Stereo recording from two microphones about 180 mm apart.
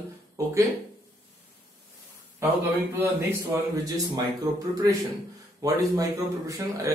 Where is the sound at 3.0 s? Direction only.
15° right (ahead or behind).